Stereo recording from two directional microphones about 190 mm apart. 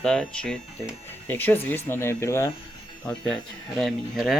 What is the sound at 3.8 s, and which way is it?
Speech, centre (ahead or behind).